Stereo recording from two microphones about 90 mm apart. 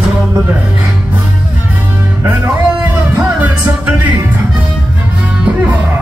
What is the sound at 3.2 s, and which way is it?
Music, 20° right (ahead or behind).